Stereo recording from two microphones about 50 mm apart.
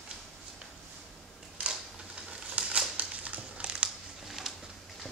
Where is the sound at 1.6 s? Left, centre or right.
Right.